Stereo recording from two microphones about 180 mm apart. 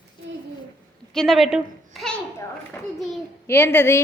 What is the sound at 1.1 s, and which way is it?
A woman's voice, centre (ahead or behind).